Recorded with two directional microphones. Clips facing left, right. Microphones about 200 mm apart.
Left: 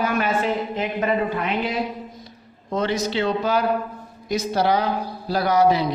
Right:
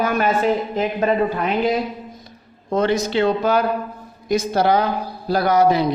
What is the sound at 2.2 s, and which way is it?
A man's voice, 50° right (ahead or behind).